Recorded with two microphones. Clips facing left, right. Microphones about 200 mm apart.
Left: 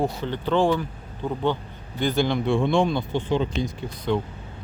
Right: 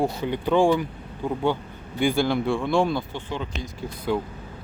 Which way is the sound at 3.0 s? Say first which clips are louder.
Left 7 dB; 20° left (ahead or behind).